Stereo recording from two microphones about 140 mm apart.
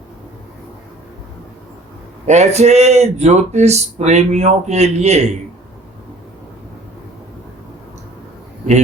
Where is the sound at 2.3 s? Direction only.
55° right (ahead or behind).